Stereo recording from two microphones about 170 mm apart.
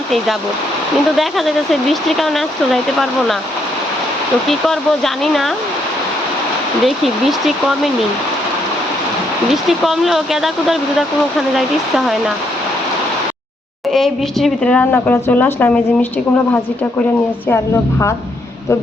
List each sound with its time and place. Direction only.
1.1 s speech: centre (ahead or behind)
4.4 s speech: centre (ahead or behind)
6.8 s speech: centre (ahead or behind)
9.5 s speech: centre (ahead or behind)
13.9 s speech: centre (ahead or behind)